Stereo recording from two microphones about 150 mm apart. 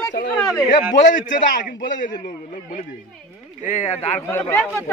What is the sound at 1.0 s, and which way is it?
Speech, 60° left (ahead or behind).